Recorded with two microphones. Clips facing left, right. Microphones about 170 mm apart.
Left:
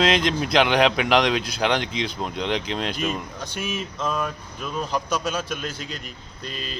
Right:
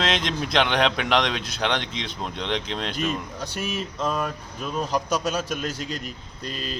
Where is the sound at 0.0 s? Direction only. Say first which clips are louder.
Left 5 dB; centre (ahead or behind).